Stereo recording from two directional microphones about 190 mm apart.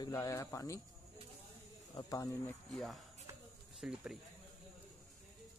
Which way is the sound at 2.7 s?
Centre (ahead or behind).